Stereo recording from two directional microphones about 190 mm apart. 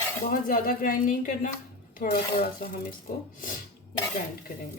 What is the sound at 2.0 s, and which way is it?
Speech, 55° left (ahead or behind).